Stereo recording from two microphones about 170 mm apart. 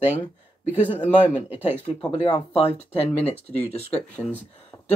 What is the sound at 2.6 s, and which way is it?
Speech, 35° left (ahead or behind).